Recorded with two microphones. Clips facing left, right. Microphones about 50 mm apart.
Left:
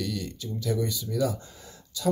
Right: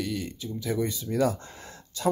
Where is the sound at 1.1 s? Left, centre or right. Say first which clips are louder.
Right 3 dB; right.